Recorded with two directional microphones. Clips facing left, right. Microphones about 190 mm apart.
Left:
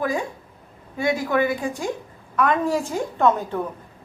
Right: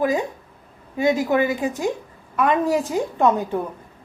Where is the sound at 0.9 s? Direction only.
20° right (ahead or behind).